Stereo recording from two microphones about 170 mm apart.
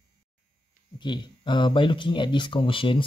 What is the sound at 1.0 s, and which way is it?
Speech, 25° left (ahead or behind).